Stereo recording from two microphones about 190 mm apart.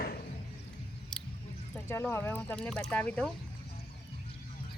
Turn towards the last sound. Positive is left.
turn(degrees=5)  # may be behind; listen again after turning